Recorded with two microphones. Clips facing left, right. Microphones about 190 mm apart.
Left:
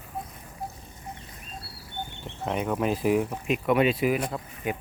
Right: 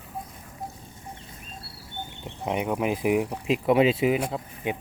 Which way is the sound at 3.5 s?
25° right (ahead or behind).